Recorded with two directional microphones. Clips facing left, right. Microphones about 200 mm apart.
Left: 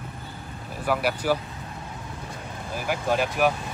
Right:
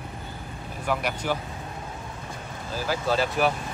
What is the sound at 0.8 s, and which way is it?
Speech, 5° left (ahead or behind).